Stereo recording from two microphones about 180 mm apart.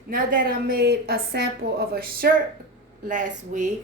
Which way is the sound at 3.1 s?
45° right (ahead or behind).